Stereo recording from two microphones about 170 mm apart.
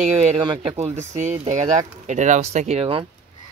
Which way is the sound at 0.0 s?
40° right (ahead or behind).